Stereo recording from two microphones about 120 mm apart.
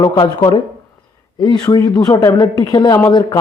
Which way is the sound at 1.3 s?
35° left (ahead or behind).